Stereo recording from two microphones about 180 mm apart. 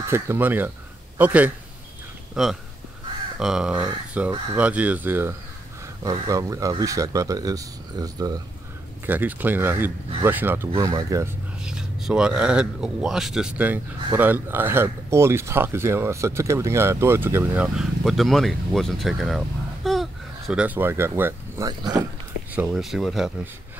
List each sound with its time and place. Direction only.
0.1 s a man's voice: 10° right (ahead or behind)
9.0 s speech: 10° right (ahead or behind)
11.6 s speech: 5° right (ahead or behind); by 22.0 s 20° right (ahead or behind)
22.6 s speech: 5° right (ahead or behind)